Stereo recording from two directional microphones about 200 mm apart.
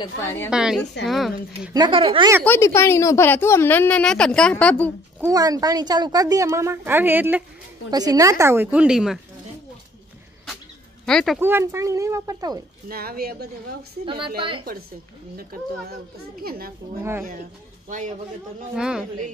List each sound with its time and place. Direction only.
0.2 s a woman's voice: 10° left (ahead or behind)
0.5 s a woman's voice: 5° right (ahead or behind)
1.7 s speech: 25° right (ahead or behind)
2.4 s a woman's voice: 10° left (ahead or behind)
5.2 s a woman's voice: 20° right (ahead or behind)
11.1 s a woman's voice: 5° left (ahead or behind)
11.3 s a woman's voice: 10° right (ahead or behind)
12.8 s speech: 45° right (ahead or behind)
14.0 s speech: 25° right (ahead or behind)
16.4 s speech: 50° right (ahead or behind)
17.0 s a woman's voice: 10° right (ahead or behind)
17.8 s a man's voice: 40° right (ahead or behind)
18.8 s a woman's voice: 5° right (ahead or behind)